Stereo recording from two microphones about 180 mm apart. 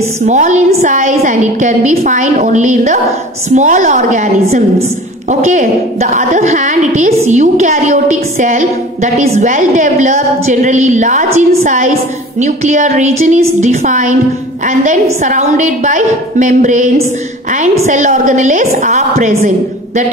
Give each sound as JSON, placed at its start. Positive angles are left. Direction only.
{"t": 0.2, "sound": "a woman's voice", "side_deg": -40}